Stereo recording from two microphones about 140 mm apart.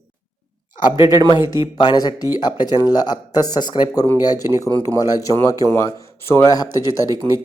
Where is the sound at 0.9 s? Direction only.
30° left (ahead or behind).